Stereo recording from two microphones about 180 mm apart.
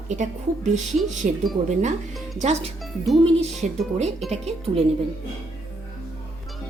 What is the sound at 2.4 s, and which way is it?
Speech, 35° right (ahead or behind).